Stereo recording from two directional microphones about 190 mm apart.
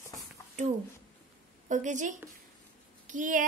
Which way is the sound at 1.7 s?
40° right (ahead or behind).